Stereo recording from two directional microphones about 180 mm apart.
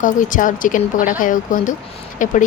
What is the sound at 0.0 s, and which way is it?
Speech, 45° left (ahead or behind).